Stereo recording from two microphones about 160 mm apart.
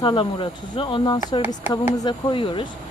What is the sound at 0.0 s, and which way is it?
Speech, 30° left (ahead or behind).